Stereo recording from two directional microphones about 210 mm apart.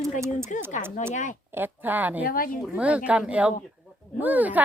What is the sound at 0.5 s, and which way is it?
Speech, 35° left (ahead or behind).